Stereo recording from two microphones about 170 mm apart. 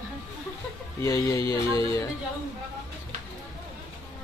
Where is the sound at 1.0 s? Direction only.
15° left (ahead or behind).